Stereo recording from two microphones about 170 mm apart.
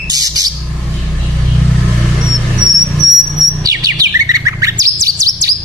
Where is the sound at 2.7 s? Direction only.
Centre (ahead or behind).